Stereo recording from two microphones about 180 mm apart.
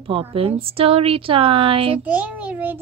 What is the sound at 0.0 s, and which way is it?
A woman's voice, 30° right (ahead or behind).